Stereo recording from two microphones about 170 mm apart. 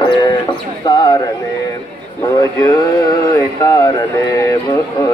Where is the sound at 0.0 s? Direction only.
25° left (ahead or behind).